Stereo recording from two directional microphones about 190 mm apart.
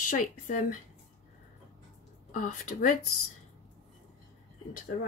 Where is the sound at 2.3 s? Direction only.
40° left (ahead or behind).